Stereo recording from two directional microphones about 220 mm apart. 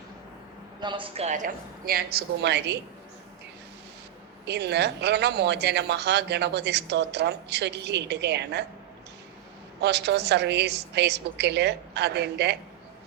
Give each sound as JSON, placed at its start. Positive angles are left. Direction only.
{"t": 0.8, "sound": "a woman's voice", "side_deg": -20}
{"t": 4.4, "sound": "speech", "side_deg": -50}
{"t": 9.8, "sound": "speech", "side_deg": -50}